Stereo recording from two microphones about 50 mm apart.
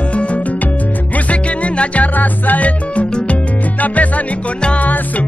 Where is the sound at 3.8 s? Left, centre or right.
Left.